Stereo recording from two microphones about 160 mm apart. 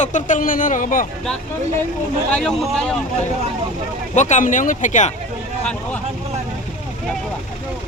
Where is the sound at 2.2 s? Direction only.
5° left (ahead or behind).